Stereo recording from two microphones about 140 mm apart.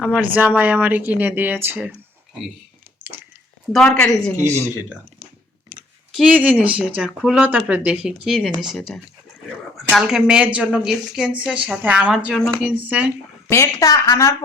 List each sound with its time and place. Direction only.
0.0 s speech: 10° right (ahead or behind)
3.0 s a sound: 10° right (ahead or behind)
3.7 s a woman's voice: 5° left (ahead or behind)
4.7 s a woman's voice: 10° right (ahead or behind)
12.7 s speech: 10° right (ahead or behind)
13.5 s a woman's voice: 20° left (ahead or behind)